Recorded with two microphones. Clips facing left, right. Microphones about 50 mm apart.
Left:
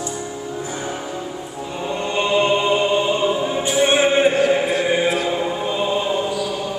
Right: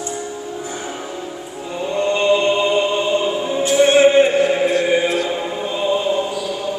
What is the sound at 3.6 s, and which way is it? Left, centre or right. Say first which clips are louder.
Music: right 6 dB; centre.